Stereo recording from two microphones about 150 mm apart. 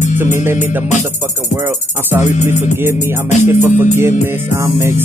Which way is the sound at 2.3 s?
55° left (ahead or behind).